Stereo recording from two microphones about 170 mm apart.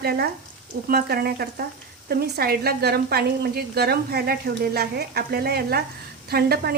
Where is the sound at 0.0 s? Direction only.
70° right (ahead or behind).